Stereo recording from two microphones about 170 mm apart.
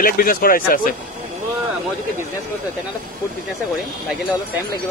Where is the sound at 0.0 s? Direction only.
60° left (ahead or behind).